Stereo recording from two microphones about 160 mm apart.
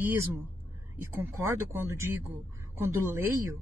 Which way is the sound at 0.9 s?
15° right (ahead or behind).